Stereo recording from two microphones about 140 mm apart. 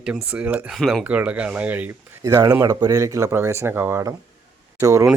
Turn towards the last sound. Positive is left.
turn(degrees=-20)  # may be behind; listen again after turning